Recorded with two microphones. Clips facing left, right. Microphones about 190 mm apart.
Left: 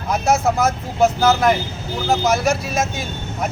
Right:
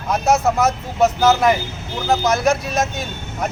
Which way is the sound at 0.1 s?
Centre (ahead or behind).